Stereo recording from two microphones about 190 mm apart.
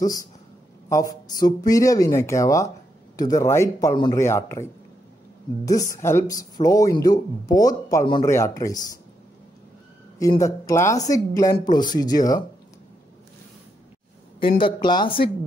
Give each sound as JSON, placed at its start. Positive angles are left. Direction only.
{"t": 0.0, "sound": "speech", "side_deg": 20}
{"t": 5.7, "sound": "speech", "side_deg": 15}
{"t": 10.4, "sound": "speech", "side_deg": 15}
{"t": 14.6, "sound": "speech", "side_deg": 25}